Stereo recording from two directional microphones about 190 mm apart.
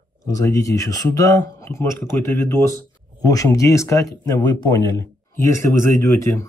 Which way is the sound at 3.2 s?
15° left (ahead or behind).